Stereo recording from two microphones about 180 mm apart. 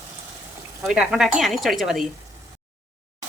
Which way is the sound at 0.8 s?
5° right (ahead or behind).